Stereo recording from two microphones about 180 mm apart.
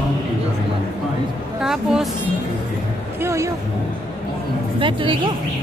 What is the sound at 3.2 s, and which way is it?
Speech, 15° right (ahead or behind).